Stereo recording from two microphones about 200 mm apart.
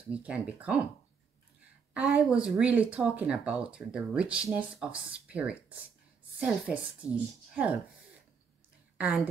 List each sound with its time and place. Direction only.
0.1 s speech: 5° right (ahead or behind)
2.0 s speech: 5° right (ahead or behind)
8.9 s a woman's voice: 5° right (ahead or behind)